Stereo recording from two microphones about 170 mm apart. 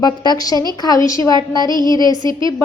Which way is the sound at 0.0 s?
25° left (ahead or behind).